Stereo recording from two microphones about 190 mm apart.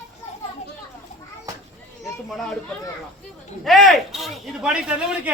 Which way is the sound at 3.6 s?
Centre (ahead or behind).